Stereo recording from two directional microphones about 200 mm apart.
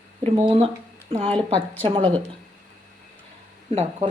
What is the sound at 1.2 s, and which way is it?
Speech, 25° right (ahead or behind).